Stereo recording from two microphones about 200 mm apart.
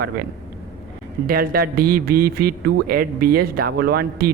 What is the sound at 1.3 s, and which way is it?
A man's voice, 50° right (ahead or behind).